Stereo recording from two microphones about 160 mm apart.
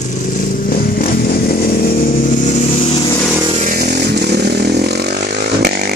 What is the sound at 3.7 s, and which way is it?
Chainsaw, 75° right (ahead or behind).